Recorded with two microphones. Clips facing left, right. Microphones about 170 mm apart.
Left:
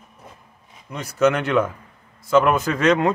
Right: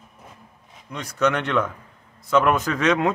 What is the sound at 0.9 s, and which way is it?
Speech, 5° left (ahead or behind).